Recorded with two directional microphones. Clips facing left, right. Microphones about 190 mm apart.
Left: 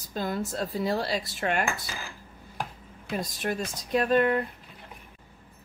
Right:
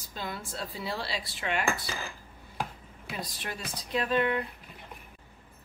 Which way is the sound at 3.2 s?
45° left (ahead or behind).